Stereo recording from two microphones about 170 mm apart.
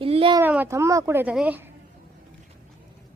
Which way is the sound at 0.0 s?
30° right (ahead or behind).